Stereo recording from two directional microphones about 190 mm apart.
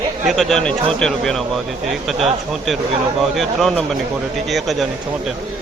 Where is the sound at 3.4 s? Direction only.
Centre (ahead or behind).